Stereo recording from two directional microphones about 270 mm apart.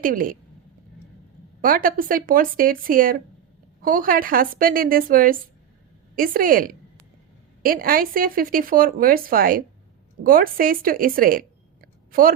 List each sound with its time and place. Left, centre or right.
0.0 s speech: right
1.6 s speech: right